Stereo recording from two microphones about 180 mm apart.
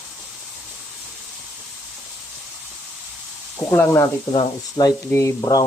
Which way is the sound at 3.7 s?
10° left (ahead or behind).